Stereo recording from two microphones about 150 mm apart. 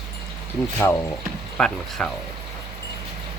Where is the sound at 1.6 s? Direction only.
5° left (ahead or behind).